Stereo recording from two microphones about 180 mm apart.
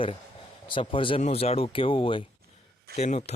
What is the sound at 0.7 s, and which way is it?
Speech, 30° left (ahead or behind).